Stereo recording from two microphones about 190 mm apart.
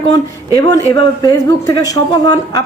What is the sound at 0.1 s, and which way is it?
Speech, 20° left (ahead or behind).